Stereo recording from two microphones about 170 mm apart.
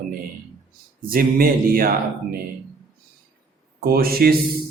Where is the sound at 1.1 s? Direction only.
60° right (ahead or behind).